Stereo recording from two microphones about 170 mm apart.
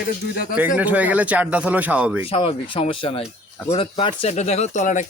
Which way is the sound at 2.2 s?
35° left (ahead or behind).